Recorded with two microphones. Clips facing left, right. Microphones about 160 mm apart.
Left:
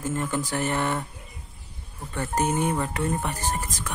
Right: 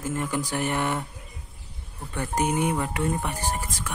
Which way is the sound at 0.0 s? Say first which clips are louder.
Left 1 dB; 10° right (ahead or behind).